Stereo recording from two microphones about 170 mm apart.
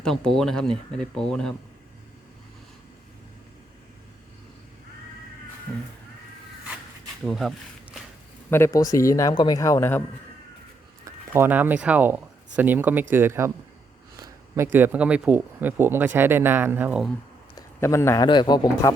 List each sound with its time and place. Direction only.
0.0 s speech: 5° left (ahead or behind)
7.3 s speech: centre (ahead or behind)
8.4 s speech: 15° left (ahead or behind)
11.0 s speech: 15° right (ahead or behind)
17.7 s speech: 15° left (ahead or behind)